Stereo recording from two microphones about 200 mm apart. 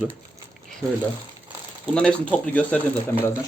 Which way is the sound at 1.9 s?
5° left (ahead or behind).